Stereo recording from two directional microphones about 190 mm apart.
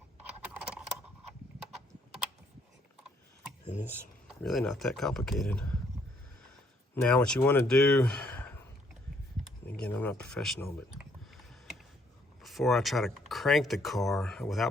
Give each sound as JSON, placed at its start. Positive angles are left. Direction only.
{"t": 0.4, "sound": "a sound", "side_deg": -5}
{"t": 3.7, "sound": "speech", "side_deg": 35}
{"t": 4.3, "sound": "speech", "side_deg": 0}
{"t": 6.9, "sound": "speech", "side_deg": 5}
{"t": 9.6, "sound": "a sound", "side_deg": 5}
{"t": 12.4, "sound": "speech", "side_deg": 0}